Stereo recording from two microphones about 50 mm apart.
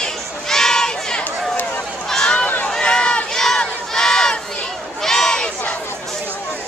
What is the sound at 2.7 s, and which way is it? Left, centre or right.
Crowd, centre.